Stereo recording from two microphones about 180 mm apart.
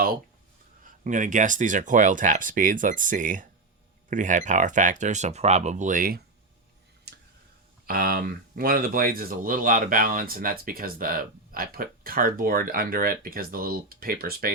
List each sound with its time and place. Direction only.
1.0 s speech: 45° right (ahead or behind)
7.1 s tick-tock: 65° right (ahead or behind)
7.9 s speech: 55° right (ahead or behind)